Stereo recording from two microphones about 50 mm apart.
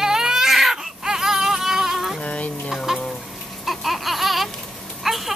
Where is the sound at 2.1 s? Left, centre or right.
Left.